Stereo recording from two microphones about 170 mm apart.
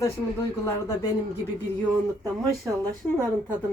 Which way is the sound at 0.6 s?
20° left (ahead or behind).